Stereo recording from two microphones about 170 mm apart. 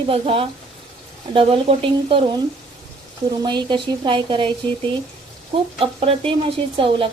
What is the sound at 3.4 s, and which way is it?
A woman's voice, 25° right (ahead or behind).